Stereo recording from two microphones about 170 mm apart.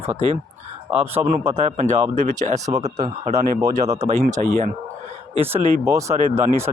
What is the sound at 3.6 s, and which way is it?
Speech, 20° right (ahead or behind).